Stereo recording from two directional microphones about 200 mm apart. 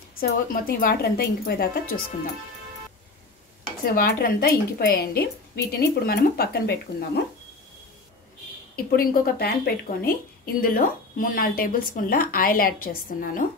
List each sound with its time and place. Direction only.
0.1 s a woman's voice: 45° left (ahead or behind)
3.8 s a woman's voice: 50° left (ahead or behind)
8.7 s a woman's voice: 45° left (ahead or behind)